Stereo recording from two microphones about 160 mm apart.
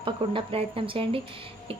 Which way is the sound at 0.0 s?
35° right (ahead or behind).